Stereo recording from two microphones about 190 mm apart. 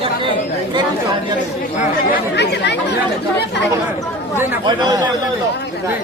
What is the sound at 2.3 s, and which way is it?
Speech, 65° left (ahead or behind).